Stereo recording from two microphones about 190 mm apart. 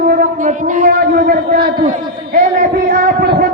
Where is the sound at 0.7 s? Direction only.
45° right (ahead or behind).